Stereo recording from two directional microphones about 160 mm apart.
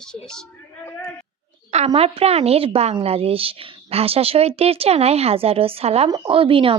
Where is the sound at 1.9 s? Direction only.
40° right (ahead or behind).